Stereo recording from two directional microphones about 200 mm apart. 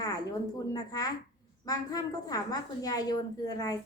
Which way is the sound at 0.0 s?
20° left (ahead or behind).